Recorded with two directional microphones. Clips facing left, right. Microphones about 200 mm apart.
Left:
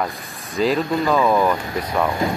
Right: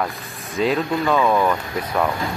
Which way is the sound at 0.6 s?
Centre (ahead or behind).